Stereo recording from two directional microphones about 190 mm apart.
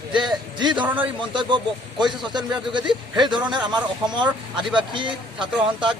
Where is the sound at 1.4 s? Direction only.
25° right (ahead or behind).